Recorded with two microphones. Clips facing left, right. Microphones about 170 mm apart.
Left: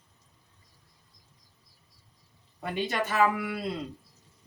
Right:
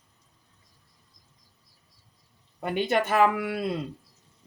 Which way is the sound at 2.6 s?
55° right (ahead or behind).